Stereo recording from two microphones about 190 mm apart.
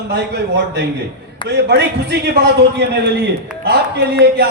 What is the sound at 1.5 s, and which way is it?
Speech, 60° right (ahead or behind).